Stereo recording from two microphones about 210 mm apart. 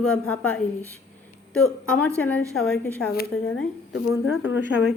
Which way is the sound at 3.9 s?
65° left (ahead or behind).